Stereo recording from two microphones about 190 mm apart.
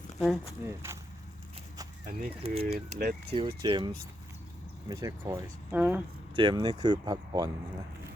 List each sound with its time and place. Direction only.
0.6 s speech: 15° right (ahead or behind)
2.0 s speech: 30° right (ahead or behind)
2.6 s speech: 55° right (ahead or behind)
3.3 s speech: 25° right (ahead or behind); by 6.0 s 10° right (ahead or behind)
6.3 s speech: 25° right (ahead or behind)